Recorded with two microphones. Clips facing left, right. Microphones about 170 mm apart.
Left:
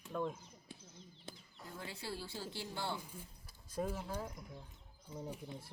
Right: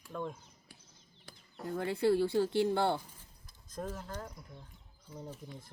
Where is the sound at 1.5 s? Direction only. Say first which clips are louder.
Right 15 dB; 60° right (ahead or behind).